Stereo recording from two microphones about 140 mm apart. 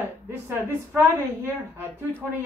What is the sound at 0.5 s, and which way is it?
A woman's voice, 15° right (ahead or behind).